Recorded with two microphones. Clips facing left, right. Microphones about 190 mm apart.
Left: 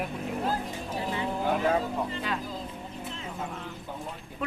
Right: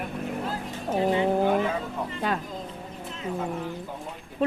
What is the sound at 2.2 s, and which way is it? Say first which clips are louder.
Speech: right 4 dB; 50° right (ahead or behind).